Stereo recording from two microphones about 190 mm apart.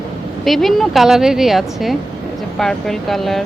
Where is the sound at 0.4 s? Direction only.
Centre (ahead or behind).